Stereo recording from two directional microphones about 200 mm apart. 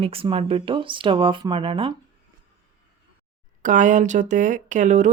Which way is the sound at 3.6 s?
40° right (ahead or behind).